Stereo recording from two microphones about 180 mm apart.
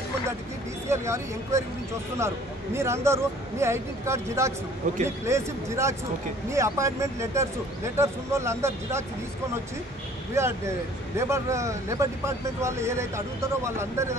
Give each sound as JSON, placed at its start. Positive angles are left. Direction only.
{"t": 0.8, "sound": "a man's voice", "side_deg": -15}
{"t": 10.3, "sound": "a man's voice", "side_deg": -15}